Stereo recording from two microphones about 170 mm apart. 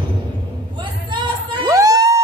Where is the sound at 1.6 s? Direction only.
20° right (ahead or behind).